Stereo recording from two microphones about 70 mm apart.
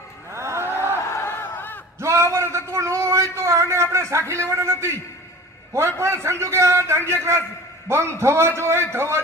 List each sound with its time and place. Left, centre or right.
0.3 s cattle: right
1.1 s a sound: left
2.0 s a man's voice: right